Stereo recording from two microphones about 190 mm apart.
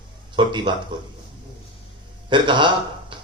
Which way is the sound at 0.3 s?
25° right (ahead or behind).